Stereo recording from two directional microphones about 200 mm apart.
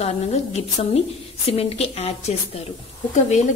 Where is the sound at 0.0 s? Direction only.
35° left (ahead or behind).